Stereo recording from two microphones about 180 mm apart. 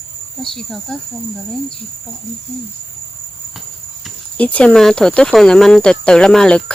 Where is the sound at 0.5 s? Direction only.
Centre (ahead or behind).